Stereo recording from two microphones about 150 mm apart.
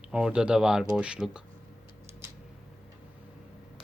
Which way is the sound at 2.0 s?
15° right (ahead or behind).